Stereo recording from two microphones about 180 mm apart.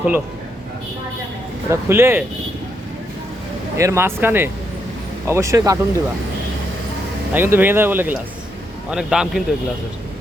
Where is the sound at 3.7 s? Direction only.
15° right (ahead or behind).